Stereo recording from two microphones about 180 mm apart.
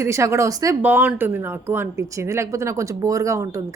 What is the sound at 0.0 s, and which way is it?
Speech, 15° right (ahead or behind).